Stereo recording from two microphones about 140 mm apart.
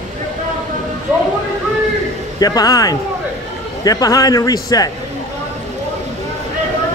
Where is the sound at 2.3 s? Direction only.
30° left (ahead or behind).